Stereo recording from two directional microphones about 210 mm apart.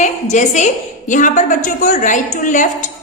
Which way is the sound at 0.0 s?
35° left (ahead or behind).